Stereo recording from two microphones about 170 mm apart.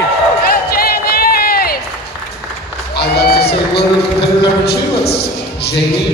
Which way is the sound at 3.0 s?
70° left (ahead or behind).